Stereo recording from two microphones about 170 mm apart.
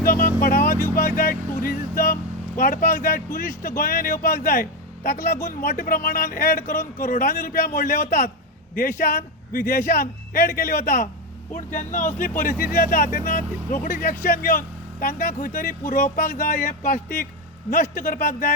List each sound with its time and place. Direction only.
0.2 s music: 50° left (ahead or behind)
0.6 s speech: 15° left (ahead or behind)
1.1 s a man's voice: 55° left (ahead or behind)
5.1 s speech: 15° left (ahead or behind)
5.4 s a man's voice: 60° left (ahead or behind)
11.5 s a man's voice: 50° left (ahead or behind)